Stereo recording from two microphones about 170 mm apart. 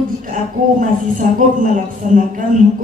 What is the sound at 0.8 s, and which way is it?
Speech, 50° right (ahead or behind).